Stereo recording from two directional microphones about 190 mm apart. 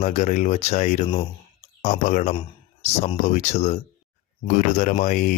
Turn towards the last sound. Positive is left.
turn(degrees=45)  # may be behind; listen again after turning